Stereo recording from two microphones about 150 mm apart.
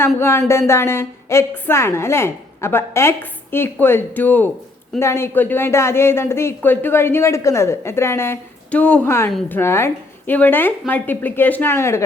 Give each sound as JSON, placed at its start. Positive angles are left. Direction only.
{"t": 0.2, "sound": "speech", "side_deg": 20}